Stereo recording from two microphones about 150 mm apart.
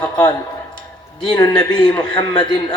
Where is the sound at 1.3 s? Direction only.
25° left (ahead or behind).